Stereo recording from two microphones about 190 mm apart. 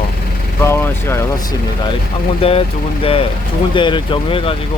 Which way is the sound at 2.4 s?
30° left (ahead or behind).